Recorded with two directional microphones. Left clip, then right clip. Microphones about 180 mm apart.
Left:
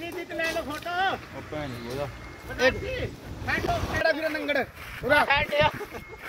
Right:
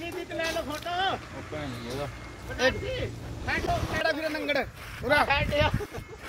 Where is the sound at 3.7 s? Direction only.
50° left (ahead or behind).